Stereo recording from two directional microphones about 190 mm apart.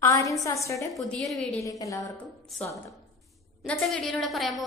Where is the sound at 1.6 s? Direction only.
15° left (ahead or behind).